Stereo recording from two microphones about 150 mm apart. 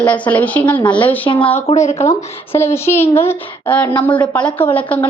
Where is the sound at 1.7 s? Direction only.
50° left (ahead or behind).